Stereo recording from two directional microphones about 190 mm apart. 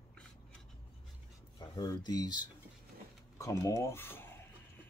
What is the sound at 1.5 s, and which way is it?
Speech, 20° left (ahead or behind).